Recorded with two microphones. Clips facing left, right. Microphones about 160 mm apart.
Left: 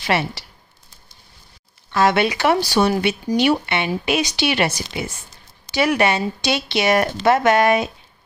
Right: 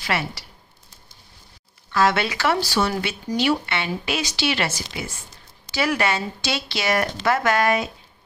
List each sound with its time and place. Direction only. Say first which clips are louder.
0.0 s speech: left 5 dB; 25° left (ahead or behind)
1.9 s speech: left 3 dB; 20° left (ahead or behind)